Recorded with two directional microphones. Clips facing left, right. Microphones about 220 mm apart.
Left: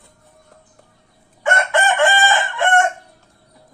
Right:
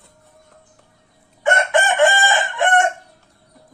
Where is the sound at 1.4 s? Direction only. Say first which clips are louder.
Right 1 dB; 20° right (ahead or behind).